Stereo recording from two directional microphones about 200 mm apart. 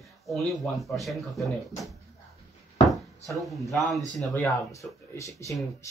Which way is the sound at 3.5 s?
Centre (ahead or behind).